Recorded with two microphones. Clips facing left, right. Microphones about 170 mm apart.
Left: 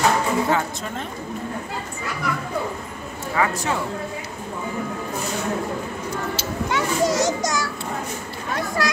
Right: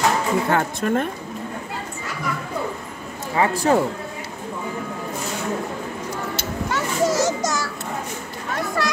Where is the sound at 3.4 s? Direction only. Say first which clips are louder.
Right 5 dB; 40° right (ahead or behind).